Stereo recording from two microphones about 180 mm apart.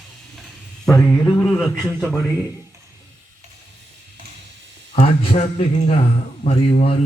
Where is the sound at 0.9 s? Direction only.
15° left (ahead or behind).